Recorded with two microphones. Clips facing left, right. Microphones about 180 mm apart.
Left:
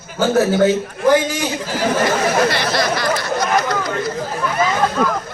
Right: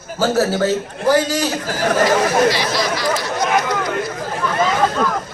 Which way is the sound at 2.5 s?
60° left (ahead or behind).